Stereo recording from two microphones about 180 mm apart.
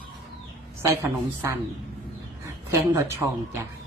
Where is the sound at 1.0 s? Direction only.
15° right (ahead or behind).